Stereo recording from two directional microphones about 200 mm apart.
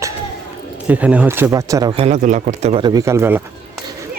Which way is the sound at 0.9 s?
5° right (ahead or behind).